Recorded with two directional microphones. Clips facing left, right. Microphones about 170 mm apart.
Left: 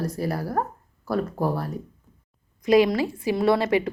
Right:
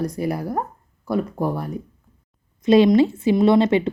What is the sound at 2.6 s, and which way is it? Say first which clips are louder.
A woman's voice: right 5 dB; 25° right (ahead or behind).